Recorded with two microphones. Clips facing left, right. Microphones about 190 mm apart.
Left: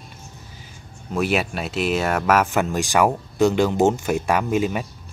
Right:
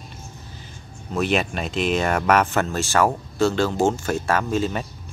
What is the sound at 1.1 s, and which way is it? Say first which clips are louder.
Speech: even; 5° left (ahead or behind).